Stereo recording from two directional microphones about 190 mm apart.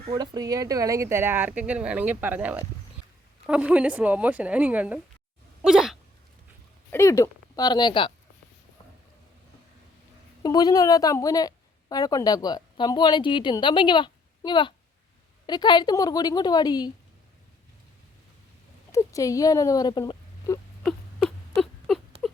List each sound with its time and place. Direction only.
0.1 s speech: 20° right (ahead or behind)
5.6 s a sound: centre (ahead or behind)
6.9 s a woman's voice: 15° left (ahead or behind)
10.4 s a woman's voice: 20° left (ahead or behind)
18.9 s speech: 15° left (ahead or behind)
20.8 s a sound: 5° left (ahead or behind)